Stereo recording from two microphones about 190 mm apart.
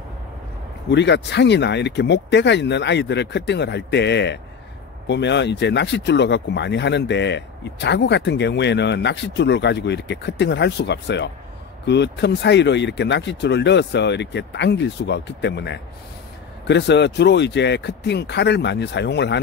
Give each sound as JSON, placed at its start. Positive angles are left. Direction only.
{"t": 0.8, "sound": "speech", "side_deg": 70}